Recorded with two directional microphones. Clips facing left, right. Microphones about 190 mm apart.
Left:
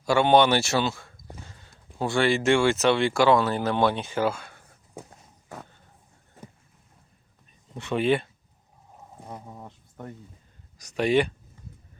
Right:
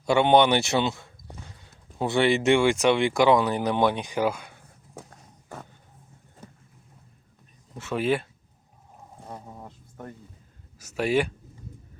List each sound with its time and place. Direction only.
0.0 s speech: 20° right (ahead or behind)
7.8 s speech: 5° right (ahead or behind)
9.5 s insect: 5° right (ahead or behind)
10.8 s speech: 5° right (ahead or behind)